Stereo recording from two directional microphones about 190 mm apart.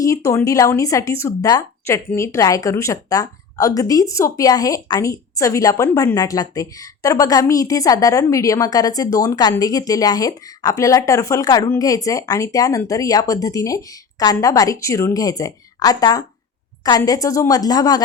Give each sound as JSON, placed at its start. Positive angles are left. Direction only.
{"t": 0.0, "sound": "a woman's voice", "side_deg": 15}